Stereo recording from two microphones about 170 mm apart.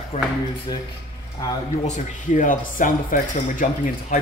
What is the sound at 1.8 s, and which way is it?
Speech, 45° left (ahead or behind).